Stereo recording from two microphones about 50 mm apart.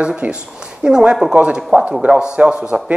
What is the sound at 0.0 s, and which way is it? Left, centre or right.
Speech, right.